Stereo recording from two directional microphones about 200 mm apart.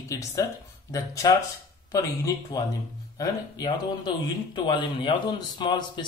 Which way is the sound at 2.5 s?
20° left (ahead or behind).